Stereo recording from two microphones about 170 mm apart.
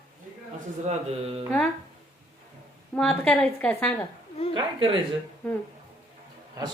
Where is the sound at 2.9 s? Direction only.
5° left (ahead or behind).